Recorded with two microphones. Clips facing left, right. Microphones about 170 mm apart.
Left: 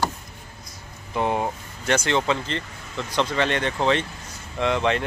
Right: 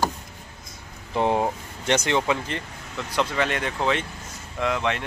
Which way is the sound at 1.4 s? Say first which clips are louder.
Right 2 dB; 20° right (ahead or behind).